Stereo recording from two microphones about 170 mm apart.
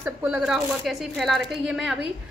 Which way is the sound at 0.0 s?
5° right (ahead or behind).